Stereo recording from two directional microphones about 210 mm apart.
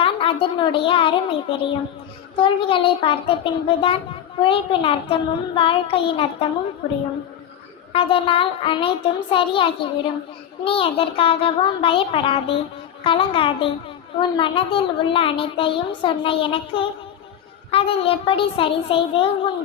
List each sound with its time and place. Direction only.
0.0 s a woman's voice: 25° left (ahead or behind)
7.9 s a woman's voice: 25° left (ahead or behind)